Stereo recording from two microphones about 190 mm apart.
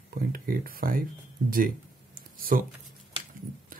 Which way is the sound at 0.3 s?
50° right (ahead or behind).